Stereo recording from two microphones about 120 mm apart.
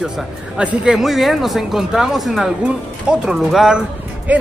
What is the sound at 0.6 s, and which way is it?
Speech, 5° right (ahead or behind).